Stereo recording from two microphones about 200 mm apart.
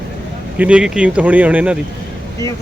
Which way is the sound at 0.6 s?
5° right (ahead or behind).